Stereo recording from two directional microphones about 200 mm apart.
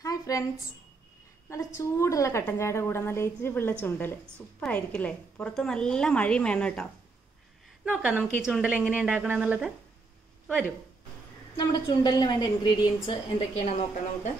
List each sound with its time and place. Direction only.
0.0 s a sound: 15° left (ahead or behind)
1.8 s a woman's voice: 15° left (ahead or behind)
7.8 s a woman's voice: 5° right (ahead or behind)
11.5 s a woman's voice: 20° left (ahead or behind)
13.7 s a woman's voice: 35° left (ahead or behind)